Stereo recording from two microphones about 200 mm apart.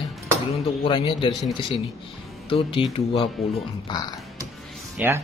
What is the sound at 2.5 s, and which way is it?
Speech, 25° left (ahead or behind).